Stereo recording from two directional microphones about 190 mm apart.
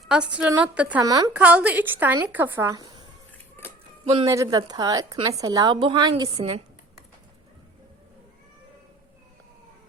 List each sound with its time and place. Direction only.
0.0 s a woman's voice: 5° right (ahead or behind)
1.0 s a woman's voice: 20° right (ahead or behind)
1.3 s speech: 5° right (ahead or behind)
4.0 s speech: 30° right (ahead or behind)
4.3 s a woman's voice: 15° right (ahead or behind)